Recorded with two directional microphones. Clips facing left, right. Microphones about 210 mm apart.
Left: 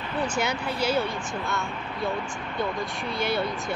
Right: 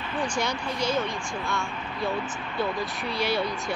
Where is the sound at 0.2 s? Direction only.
5° left (ahead or behind).